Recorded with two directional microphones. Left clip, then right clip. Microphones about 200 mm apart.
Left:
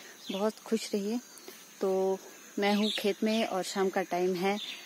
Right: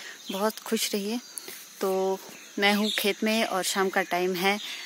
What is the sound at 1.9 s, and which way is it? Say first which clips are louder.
Speech: right 2 dB; 15° right (ahead or behind).